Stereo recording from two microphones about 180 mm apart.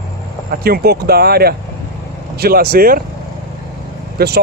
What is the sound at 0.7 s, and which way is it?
Speech, 60° right (ahead or behind).